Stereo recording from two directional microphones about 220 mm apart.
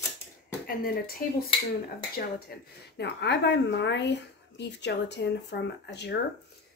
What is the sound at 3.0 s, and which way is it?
Speech, 50° left (ahead or behind).